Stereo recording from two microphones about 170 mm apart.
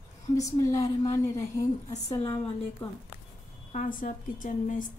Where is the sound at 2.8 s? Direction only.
5° left (ahead or behind).